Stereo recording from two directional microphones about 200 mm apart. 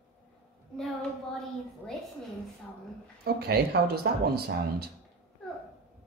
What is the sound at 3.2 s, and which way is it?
Speech, 50° right (ahead or behind).